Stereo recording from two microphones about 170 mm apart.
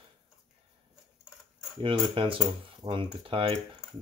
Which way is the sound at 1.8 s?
30° right (ahead or behind).